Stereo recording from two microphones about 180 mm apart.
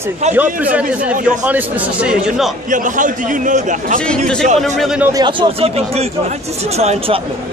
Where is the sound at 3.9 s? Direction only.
5° left (ahead or behind).